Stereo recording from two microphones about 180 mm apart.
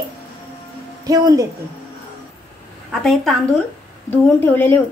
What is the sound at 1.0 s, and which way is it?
Speech, 20° right (ahead or behind).